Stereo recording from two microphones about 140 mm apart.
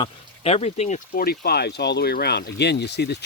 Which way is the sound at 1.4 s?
90° left.